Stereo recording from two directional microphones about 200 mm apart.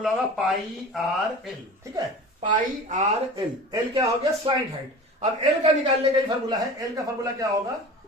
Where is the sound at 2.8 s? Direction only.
40° right (ahead or behind).